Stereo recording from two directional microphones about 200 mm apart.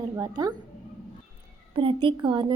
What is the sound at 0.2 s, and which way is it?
Speech, 20° right (ahead or behind).